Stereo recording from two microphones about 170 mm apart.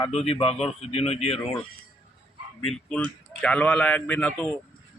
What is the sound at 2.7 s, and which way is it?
A man's voice, 5° left (ahead or behind).